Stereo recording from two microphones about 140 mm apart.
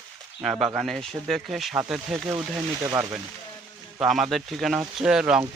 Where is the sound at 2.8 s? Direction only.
25° right (ahead or behind).